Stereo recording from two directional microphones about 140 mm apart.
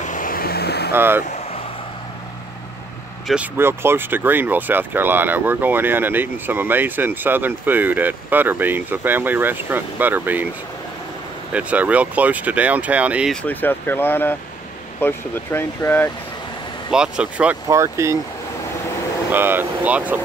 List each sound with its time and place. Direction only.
0.0 s vehicle: 70° left (ahead or behind); by 0.6 s 90° left
0.9 s speech: 15° right (ahead or behind)
1.2 s vehicle: 55° left (ahead or behind)
3.5 s speech: 15° right (ahead or behind)
11.5 s speech: 10° right (ahead or behind)
13.3 s speech: 10° left (ahead or behind)
16.9 s speech: 5° right (ahead or behind)
17.6 s speech: 20° right (ahead or behind)
19.3 s speech: 15° right (ahead or behind)